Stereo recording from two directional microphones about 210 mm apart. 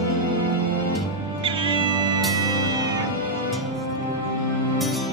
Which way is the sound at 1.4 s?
25° right (ahead or behind).